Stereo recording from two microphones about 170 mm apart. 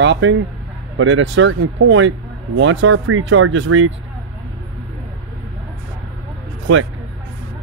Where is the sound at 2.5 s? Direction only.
90° right.